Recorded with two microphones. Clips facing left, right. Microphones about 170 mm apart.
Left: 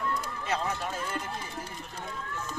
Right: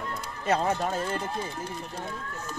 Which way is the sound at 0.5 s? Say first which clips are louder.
Right 7 dB; 45° right (ahead or behind).